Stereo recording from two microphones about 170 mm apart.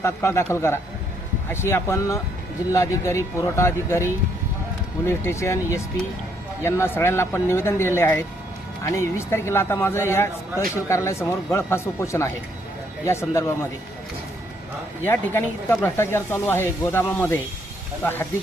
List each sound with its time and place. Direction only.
0.0 s speech: 15° left (ahead or behind)
15.0 s speech: 10° left (ahead or behind)